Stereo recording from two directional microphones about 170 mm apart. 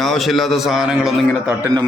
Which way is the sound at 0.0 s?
Centre (ahead or behind).